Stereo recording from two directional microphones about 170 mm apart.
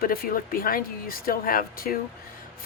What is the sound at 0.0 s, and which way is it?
Speech, 60° left (ahead or behind).